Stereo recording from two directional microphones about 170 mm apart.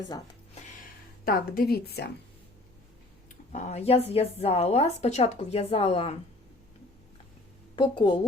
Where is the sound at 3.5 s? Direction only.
40° left (ahead or behind).